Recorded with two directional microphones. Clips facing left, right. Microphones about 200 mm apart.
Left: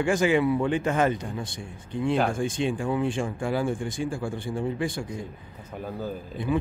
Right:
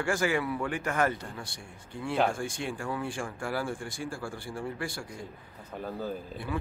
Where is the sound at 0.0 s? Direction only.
20° left (ahead or behind).